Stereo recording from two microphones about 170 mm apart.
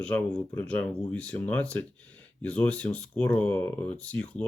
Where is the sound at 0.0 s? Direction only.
10° left (ahead or behind).